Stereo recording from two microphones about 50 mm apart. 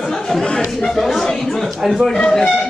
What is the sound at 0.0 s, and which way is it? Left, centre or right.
Chatter, centre.